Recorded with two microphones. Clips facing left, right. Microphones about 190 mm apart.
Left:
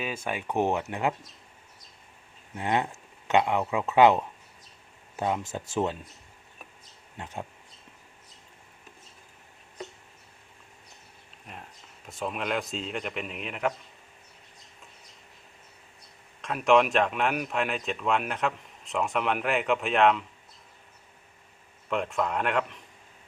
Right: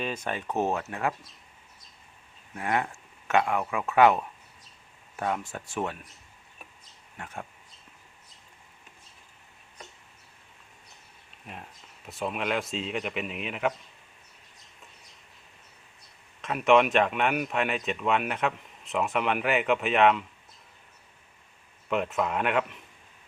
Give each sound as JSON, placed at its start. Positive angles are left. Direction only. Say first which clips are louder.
{"t": 0.0, "sound": "speech", "louder": "even", "side_deg": 10}
{"t": 2.6, "sound": "speech", "louder": "left 1 dB", "side_deg": 20}
{"t": 11.5, "sound": "speech", "louder": "right 2 dB", "side_deg": -5}
{"t": 16.4, "sound": "speech", "louder": "right 1 dB", "side_deg": 0}
{"t": 21.8, "sound": "speech", "louder": "right 1 dB", "side_deg": -5}